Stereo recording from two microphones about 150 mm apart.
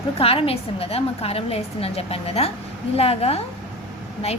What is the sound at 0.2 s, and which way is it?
A woman's voice, 40° left (ahead or behind).